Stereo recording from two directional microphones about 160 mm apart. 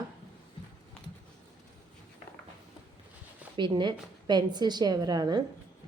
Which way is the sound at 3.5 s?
30° right (ahead or behind).